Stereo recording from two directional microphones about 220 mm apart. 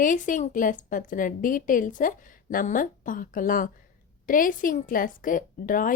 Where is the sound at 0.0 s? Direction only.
35° left (ahead or behind).